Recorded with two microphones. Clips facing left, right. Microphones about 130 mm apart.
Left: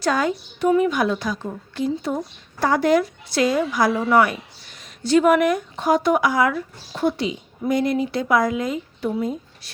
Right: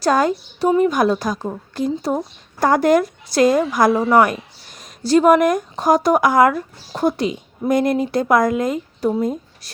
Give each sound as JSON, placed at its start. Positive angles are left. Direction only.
{"t": 0.0, "sound": "a woman's voice", "side_deg": -40}